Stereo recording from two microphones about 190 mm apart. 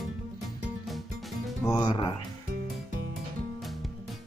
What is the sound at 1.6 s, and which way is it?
Speech, 20° left (ahead or behind).